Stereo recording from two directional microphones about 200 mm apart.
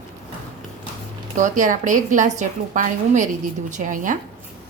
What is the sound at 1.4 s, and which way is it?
A woman's voice, 40° right (ahead or behind).